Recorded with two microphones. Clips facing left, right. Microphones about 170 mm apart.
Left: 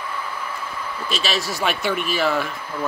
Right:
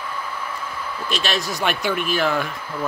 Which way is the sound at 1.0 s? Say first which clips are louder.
Even; centre (ahead or behind).